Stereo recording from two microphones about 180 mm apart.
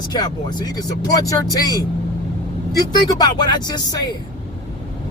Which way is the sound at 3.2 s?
25° left (ahead or behind).